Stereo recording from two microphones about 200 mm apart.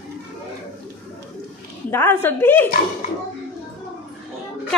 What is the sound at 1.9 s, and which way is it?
Speech, 10° left (ahead or behind).